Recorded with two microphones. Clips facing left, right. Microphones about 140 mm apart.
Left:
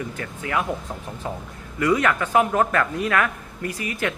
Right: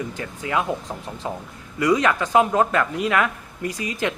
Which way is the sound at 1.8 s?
15° right (ahead or behind).